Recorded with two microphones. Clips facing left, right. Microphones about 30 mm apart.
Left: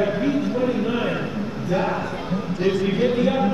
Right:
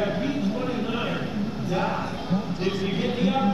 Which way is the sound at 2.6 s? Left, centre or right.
Right.